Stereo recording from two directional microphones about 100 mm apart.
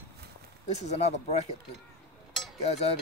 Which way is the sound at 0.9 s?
90° left.